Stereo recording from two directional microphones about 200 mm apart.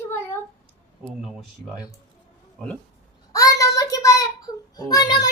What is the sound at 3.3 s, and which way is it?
Child singing, 15° left (ahead or behind).